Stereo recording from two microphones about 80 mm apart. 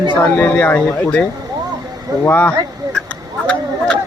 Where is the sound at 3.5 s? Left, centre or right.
Centre.